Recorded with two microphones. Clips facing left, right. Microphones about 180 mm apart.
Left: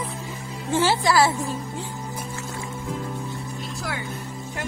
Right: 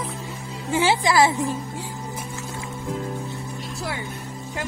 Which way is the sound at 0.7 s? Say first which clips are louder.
Even; 15° right (ahead or behind).